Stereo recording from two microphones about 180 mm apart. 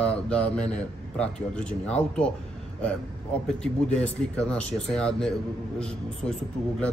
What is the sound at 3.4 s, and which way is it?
Speech, 5° left (ahead or behind).